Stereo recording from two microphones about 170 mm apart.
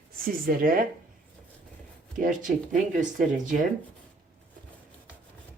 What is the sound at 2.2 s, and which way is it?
Speech, 50° right (ahead or behind).